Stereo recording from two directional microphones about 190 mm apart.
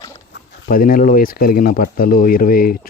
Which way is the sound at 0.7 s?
50° left (ahead or behind).